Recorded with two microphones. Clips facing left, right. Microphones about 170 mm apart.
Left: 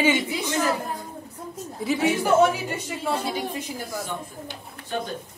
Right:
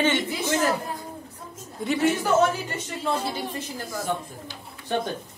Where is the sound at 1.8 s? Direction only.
5° left (ahead or behind).